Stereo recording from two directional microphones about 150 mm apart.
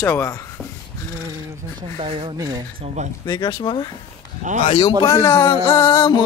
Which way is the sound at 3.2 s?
30° left (ahead or behind).